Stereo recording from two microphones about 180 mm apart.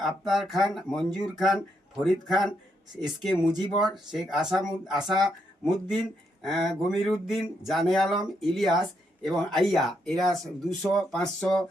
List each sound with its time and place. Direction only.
0.0 s speech: centre (ahead or behind)
6.4 s speech: centre (ahead or behind)